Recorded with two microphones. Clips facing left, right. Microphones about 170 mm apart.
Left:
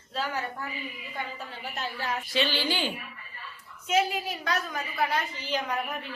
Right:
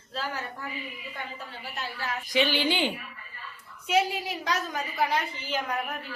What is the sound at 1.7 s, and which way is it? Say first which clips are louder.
Speech: left 2 dB; 20° left (ahead or behind).